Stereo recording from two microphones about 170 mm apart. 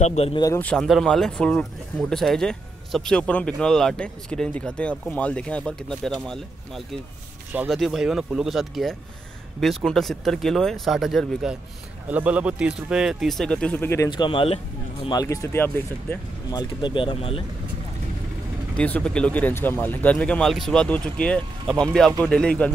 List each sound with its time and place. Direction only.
0.0 s speech: 40° left (ahead or behind)
0.6 s speech: 5° left (ahead or behind)
14.1 s speech: 30° left (ahead or behind)
15.0 s speech: 20° left (ahead or behind)
16.4 s speech: 25° left (ahead or behind)
18.8 s speech: 10° left (ahead or behind)